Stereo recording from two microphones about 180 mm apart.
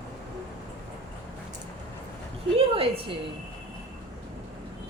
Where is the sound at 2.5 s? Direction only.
30° right (ahead or behind).